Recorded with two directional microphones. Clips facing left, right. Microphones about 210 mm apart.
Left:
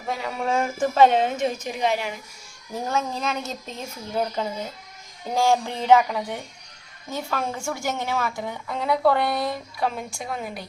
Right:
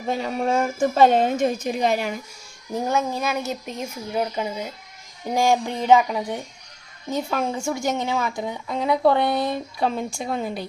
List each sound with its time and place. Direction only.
0.1 s a woman's voice: 35° right (ahead or behind)
2.8 s a woman's voice: 10° right (ahead or behind); by 10.7 s 30° right (ahead or behind)